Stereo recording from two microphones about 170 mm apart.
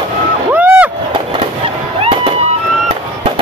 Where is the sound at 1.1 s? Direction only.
35° right (ahead or behind).